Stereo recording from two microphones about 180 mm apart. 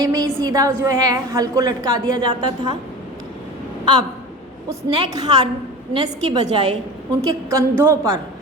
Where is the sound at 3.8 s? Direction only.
20° right (ahead or behind).